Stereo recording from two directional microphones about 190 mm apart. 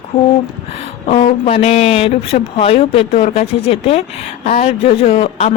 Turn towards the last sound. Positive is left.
turn(degrees=35)  # may be behind; listen again after turning